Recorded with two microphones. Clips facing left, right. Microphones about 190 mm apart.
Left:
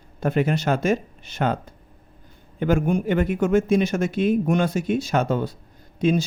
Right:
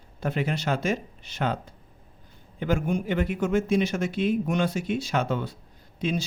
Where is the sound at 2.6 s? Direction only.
50° left (ahead or behind).